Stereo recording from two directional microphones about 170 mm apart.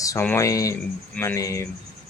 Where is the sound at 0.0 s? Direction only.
15° left (ahead or behind).